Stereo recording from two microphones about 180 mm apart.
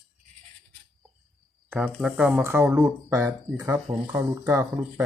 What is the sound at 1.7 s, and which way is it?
Speech, 10° right (ahead or behind).